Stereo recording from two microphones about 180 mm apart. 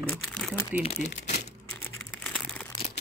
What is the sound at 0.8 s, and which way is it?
Speech, 35° left (ahead or behind).